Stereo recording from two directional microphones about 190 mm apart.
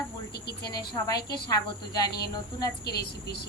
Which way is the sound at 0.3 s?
60° left (ahead or behind).